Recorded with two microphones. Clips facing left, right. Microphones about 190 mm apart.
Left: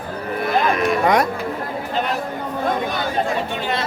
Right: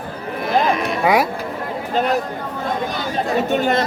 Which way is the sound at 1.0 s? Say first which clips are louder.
Right 2 dB; 5° right (ahead or behind).